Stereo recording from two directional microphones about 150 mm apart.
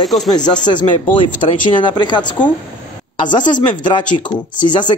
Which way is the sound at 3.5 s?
30° left (ahead or behind).